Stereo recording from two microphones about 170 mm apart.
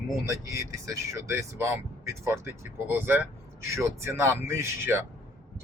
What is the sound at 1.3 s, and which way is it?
Speech, 15° right (ahead or behind).